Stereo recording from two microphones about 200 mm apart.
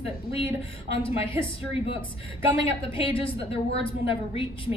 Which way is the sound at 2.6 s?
25° left (ahead or behind).